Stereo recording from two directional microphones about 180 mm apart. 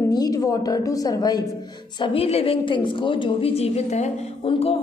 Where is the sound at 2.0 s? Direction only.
30° left (ahead or behind).